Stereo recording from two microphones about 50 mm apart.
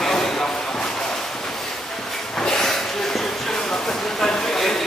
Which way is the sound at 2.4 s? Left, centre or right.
Centre.